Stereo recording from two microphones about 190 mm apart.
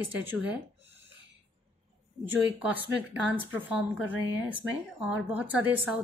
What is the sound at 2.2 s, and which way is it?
Speech, 10° right (ahead or behind).